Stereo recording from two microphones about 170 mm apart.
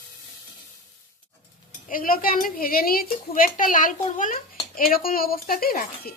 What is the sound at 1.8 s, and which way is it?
A woman's voice, 55° left (ahead or behind).